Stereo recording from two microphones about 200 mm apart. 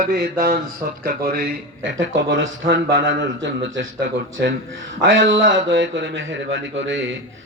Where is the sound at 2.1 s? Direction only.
65° right (ahead or behind).